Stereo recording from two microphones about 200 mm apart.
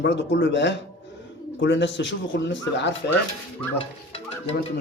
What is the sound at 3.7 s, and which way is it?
Speech, 30° left (ahead or behind).